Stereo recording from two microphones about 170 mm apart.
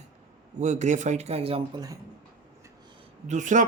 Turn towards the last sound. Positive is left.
turn(degrees=-45)  # may be behind; listen again after turning